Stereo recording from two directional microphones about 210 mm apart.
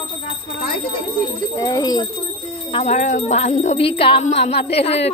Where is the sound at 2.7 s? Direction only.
30° left (ahead or behind).